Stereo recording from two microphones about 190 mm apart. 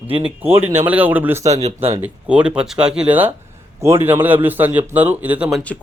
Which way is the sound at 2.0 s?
5° right (ahead or behind).